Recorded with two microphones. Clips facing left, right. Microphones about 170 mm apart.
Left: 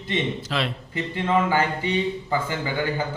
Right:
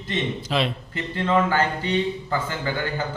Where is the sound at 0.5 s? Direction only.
20° right (ahead or behind).